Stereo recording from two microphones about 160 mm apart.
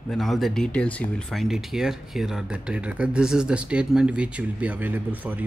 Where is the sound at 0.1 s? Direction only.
Centre (ahead or behind).